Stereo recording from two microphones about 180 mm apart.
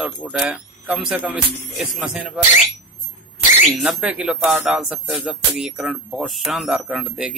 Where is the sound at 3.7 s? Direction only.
5° right (ahead or behind).